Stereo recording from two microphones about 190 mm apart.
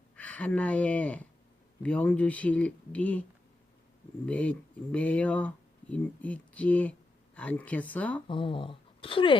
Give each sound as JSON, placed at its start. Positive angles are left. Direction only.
{"t": 0.2, "sound": "speech", "side_deg": 10}
{"t": 4.3, "sound": "speech", "side_deg": 5}
{"t": 8.3, "sound": "speech", "side_deg": 25}